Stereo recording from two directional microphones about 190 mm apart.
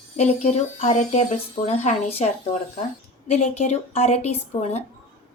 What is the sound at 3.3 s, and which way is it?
Speech, 35° left (ahead or behind).